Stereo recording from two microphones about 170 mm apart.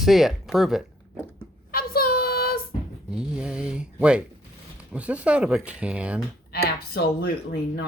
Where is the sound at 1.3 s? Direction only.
60° left (ahead or behind).